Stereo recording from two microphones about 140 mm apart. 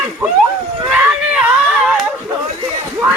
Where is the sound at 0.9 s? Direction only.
10° right (ahead or behind).